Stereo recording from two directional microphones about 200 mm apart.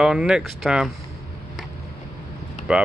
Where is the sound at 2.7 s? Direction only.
5° right (ahead or behind).